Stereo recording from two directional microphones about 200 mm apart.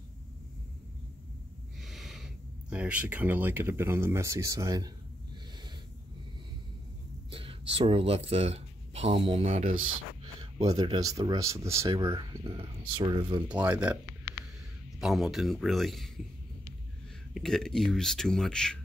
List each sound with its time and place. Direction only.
1.8 s speech: centre (ahead or behind); by 4.9 s 20° right (ahead or behind)
7.2 s a sound: 25° right (ahead or behind)
9.4 s speech: 35° right (ahead or behind)
10.4 s speech: 20° right (ahead or behind)
13.5 s speech: 5° right (ahead or behind)
15.0 s speech: centre (ahead or behind)
17.3 s speech: centre (ahead or behind)